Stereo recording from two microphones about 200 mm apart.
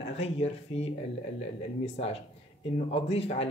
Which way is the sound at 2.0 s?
35° left (ahead or behind).